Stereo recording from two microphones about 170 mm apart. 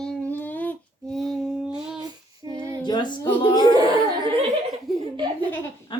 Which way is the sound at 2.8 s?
25° left (ahead or behind).